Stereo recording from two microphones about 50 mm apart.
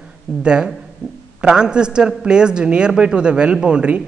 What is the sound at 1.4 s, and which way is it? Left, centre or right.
A woman's voice, centre.